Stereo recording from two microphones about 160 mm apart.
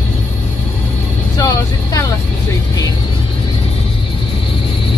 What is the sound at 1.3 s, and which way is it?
Vehicle, 25° left (ahead or behind).